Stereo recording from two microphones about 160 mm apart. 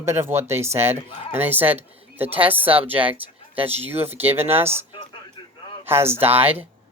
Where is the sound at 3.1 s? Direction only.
35° right (ahead or behind).